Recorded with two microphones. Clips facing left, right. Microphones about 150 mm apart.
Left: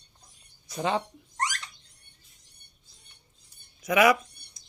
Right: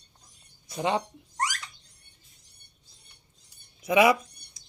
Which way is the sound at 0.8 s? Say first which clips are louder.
Right 1 dB; 15° right (ahead or behind).